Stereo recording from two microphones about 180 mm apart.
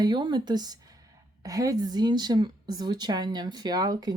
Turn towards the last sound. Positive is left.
turn(degrees=-20)  # may be behind; listen again after turning